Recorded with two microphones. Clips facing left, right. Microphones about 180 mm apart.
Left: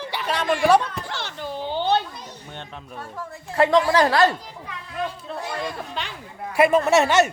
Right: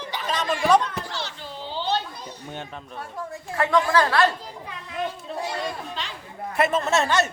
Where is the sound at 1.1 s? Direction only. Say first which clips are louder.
Left 3 dB; 55° left (ahead or behind).